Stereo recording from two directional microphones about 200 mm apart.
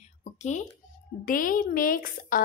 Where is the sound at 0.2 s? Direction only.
35° left (ahead or behind).